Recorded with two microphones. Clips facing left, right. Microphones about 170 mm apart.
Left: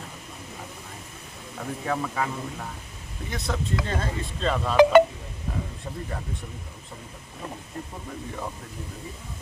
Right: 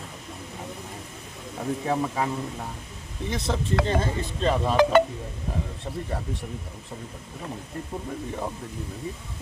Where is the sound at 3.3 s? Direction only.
20° right (ahead or behind).